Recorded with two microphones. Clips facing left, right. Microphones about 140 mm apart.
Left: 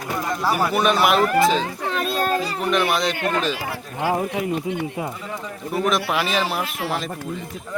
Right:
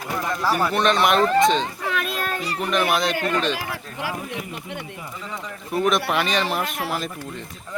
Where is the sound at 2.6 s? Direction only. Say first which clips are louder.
Right 2 dB; centre (ahead or behind).